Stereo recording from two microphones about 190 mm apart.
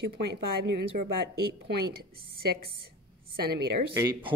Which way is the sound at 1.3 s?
55° right (ahead or behind).